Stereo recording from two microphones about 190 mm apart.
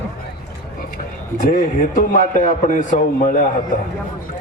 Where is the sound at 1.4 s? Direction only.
45° left (ahead or behind).